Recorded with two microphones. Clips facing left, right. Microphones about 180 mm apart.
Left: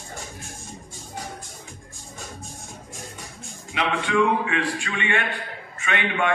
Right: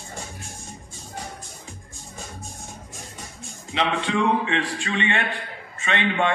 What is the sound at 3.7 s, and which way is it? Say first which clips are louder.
A man's voice: even; 30° right (ahead or behind).